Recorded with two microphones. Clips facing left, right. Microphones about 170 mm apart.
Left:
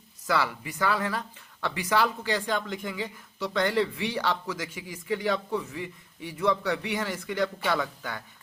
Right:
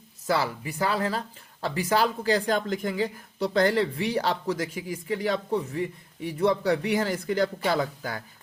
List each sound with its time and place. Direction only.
0.3 s a woman's voice: 30° right (ahead or behind)